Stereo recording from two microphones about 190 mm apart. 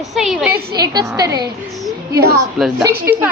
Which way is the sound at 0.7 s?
20° right (ahead or behind).